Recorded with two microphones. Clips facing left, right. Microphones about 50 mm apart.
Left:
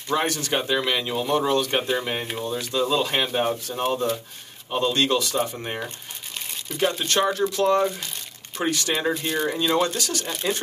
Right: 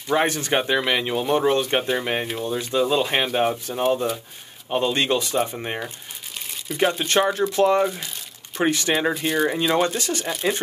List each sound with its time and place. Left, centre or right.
0.1 s speech: right
1.8 s speech: centre
4.7 s speech: right